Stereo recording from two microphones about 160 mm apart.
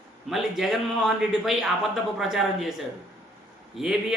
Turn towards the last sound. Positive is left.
turn(degrees=0)  # may be behind; listen again after turning